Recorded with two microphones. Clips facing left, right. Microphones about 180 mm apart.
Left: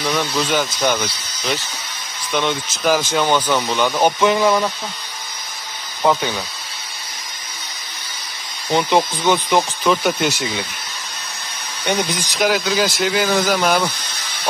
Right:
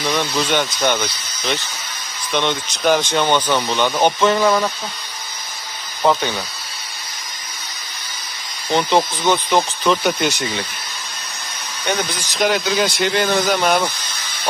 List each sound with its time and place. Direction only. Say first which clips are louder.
0.0 s speech: even; centre (ahead or behind)
6.0 s speech: even; centre (ahead or behind)
8.6 s speech: even; 5° left (ahead or behind)
12.0 s speech: left 2 dB; 15° left (ahead or behind)
12.4 s speech: even; centre (ahead or behind)